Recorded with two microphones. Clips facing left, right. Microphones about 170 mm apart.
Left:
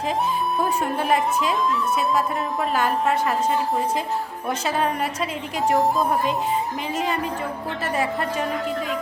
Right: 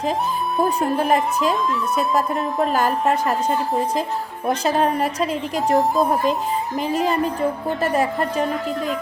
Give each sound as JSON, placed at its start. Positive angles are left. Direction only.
{"t": 0.6, "sound": "a woman's voice", "side_deg": -40}
{"t": 4.4, "sound": "a woman's voice", "side_deg": -40}
{"t": 5.5, "sound": "speech", "side_deg": 0}
{"t": 6.8, "sound": "a woman's voice", "side_deg": -40}